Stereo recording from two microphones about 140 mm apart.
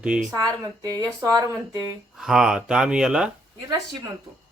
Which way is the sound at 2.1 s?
5° right (ahead or behind).